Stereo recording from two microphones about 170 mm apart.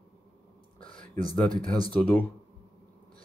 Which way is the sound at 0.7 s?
50° right (ahead or behind).